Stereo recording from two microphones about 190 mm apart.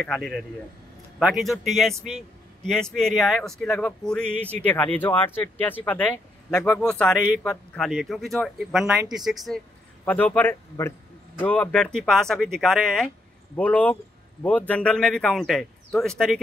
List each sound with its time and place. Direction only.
0.0 s speech: 5° left (ahead or behind)
2.0 s a sound: 35° right (ahead or behind)
2.7 s speech: 5° left (ahead or behind)